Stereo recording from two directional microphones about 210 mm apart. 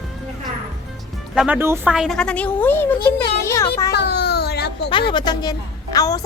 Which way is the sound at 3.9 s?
50° left (ahead or behind).